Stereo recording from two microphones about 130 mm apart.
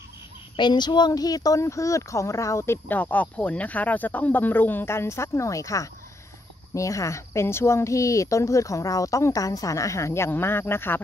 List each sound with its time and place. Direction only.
0.6 s speech: 35° left (ahead or behind); by 11.0 s 20° left (ahead or behind)